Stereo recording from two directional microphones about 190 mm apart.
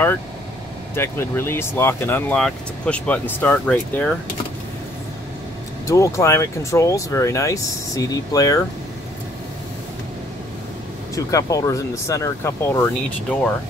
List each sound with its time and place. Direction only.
0.9 s speech: 10° left (ahead or behind)
5.9 s speech: 15° left (ahead or behind)
11.1 s speech: 20° left (ahead or behind)